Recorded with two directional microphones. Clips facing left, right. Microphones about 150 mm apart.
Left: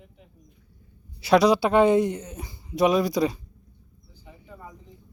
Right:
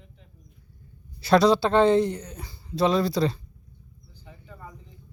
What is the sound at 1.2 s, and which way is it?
Speech, 10° left (ahead or behind).